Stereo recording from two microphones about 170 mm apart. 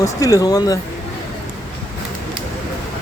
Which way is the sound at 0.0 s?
20° left (ahead or behind).